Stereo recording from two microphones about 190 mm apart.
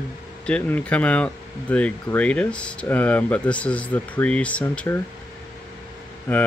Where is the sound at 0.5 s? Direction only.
5° left (ahead or behind).